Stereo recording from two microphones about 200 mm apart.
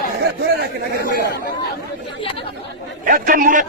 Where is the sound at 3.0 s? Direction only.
40° right (ahead or behind).